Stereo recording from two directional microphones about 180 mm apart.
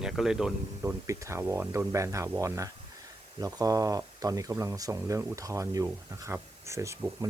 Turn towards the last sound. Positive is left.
turn(degrees=-15)  # may be behind; listen again after turning